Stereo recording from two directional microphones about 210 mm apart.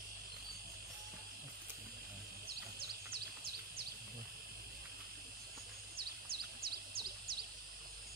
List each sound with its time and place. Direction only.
5.9 s bird: 45° right (ahead or behind)